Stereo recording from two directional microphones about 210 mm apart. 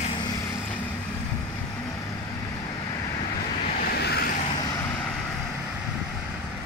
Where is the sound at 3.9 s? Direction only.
50° left (ahead or behind).